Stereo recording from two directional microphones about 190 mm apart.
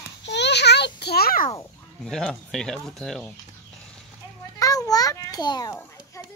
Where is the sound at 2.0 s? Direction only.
Centre (ahead or behind).